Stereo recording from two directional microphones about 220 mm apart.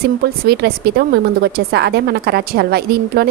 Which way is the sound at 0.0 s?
45° right (ahead or behind).